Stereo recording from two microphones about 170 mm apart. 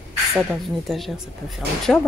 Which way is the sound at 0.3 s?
Centre (ahead or behind).